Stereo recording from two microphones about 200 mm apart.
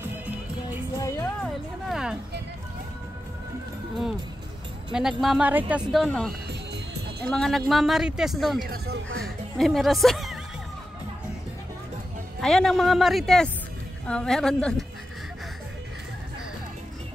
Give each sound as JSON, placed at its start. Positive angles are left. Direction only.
{"t": 0.9, "sound": "music", "side_deg": 15}
{"t": 1.9, "sound": "music", "side_deg": -5}
{"t": 5.2, "sound": "a woman's voice", "side_deg": -5}
{"t": 6.7, "sound": "music", "side_deg": -55}
{"t": 7.2, "sound": "speech", "side_deg": 5}
{"t": 8.6, "sound": "speech", "side_deg": -55}
{"t": 9.2, "sound": "speech", "side_deg": 0}
{"t": 12.4, "sound": "speech", "side_deg": 0}